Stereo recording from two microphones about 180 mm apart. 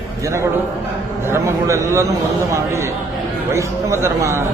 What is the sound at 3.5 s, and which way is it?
Speech, 15° right (ahead or behind).